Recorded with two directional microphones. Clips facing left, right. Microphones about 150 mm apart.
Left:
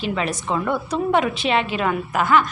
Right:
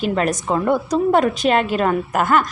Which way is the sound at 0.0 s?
45° right (ahead or behind).